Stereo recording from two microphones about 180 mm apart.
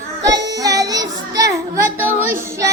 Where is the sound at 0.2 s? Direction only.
20° right (ahead or behind).